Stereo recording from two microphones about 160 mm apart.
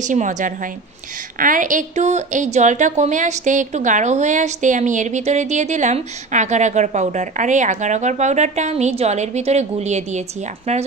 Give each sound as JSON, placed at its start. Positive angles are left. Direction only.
{"t": 0.0, "sound": "a woman's voice", "side_deg": -50}